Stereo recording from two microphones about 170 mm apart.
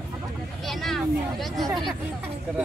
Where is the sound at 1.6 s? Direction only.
25° right (ahead or behind).